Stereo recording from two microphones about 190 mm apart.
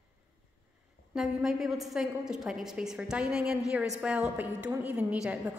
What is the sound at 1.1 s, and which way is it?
A woman's voice, centre (ahead or behind).